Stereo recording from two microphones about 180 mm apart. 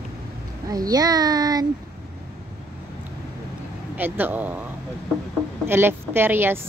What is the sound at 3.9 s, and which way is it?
A woman's voice, 10° right (ahead or behind).